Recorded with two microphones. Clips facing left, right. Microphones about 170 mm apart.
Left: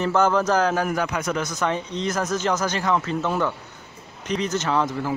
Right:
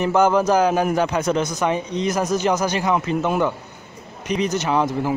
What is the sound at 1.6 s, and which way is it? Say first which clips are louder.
Speech: right 3 dB; 15° right (ahead or behind).